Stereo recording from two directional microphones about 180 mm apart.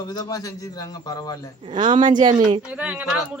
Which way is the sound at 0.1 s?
20° left (ahead or behind).